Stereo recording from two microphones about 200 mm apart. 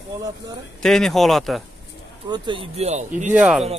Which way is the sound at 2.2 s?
20° right (ahead or behind).